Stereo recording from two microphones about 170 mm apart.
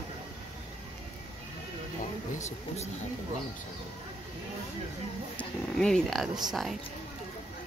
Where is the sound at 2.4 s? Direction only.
45° left (ahead or behind).